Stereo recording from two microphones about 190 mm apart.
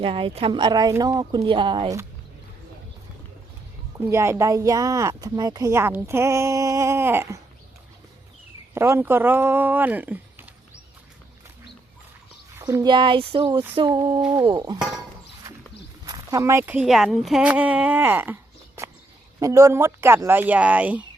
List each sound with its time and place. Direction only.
0.0 s speech: 30° right (ahead or behind)
4.0 s speech: 15° right (ahead or behind)
8.7 s speech: 15° right (ahead or behind)
12.5 s speech: 15° right (ahead or behind)
14.2 s speech: 10° right (ahead or behind)
14.4 s speech: 20° right (ahead or behind)
16.0 s speech: 20° right (ahead or behind)
19.4 s speech: 15° right (ahead or behind)